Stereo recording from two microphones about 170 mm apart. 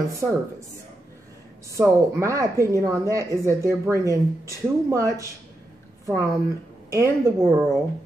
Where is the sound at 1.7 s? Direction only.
15° right (ahead or behind).